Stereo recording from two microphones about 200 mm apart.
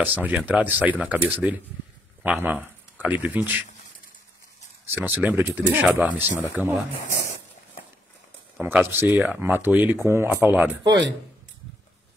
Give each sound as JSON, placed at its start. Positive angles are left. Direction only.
{"t": 0.0, "sound": "speech", "side_deg": -10}
{"t": 4.9, "sound": "speech", "side_deg": -10}
{"t": 8.5, "sound": "speech", "side_deg": -10}
{"t": 10.9, "sound": "speech", "side_deg": -65}